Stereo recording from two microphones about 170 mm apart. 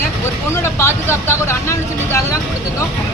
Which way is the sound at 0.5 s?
15° left (ahead or behind).